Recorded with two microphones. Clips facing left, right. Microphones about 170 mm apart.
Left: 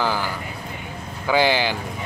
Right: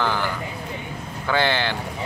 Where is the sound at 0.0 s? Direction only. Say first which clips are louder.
Even; 10° left (ahead or behind).